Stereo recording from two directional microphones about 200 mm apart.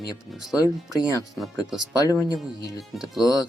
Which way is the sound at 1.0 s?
Centre (ahead or behind).